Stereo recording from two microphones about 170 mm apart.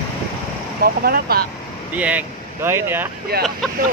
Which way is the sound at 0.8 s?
65° right (ahead or behind).